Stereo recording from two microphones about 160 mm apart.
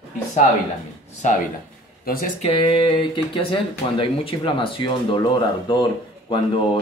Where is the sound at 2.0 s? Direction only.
65° left (ahead or behind).